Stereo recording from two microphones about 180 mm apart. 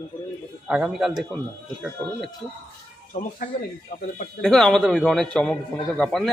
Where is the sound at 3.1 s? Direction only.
45° left (ahead or behind).